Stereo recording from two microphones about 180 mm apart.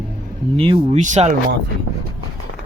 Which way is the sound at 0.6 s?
30° right (ahead or behind).